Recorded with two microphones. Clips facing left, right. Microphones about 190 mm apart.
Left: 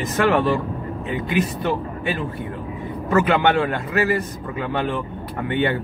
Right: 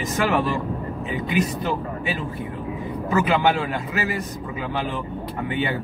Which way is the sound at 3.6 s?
Centre (ahead or behind).